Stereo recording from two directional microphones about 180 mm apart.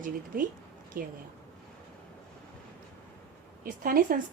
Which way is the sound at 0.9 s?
50° right (ahead or behind).